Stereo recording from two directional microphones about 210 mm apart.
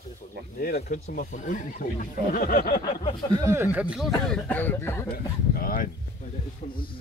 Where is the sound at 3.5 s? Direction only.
10° right (ahead or behind); by 5.1 s 10° left (ahead or behind).